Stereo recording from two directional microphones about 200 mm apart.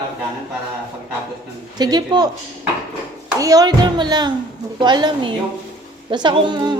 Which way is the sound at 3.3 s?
15° right (ahead or behind).